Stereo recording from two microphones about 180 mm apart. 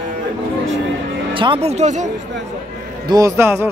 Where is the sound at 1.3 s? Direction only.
30° right (ahead or behind).